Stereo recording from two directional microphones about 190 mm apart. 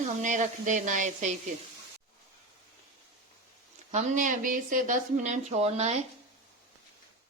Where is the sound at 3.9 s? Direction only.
40° right (ahead or behind).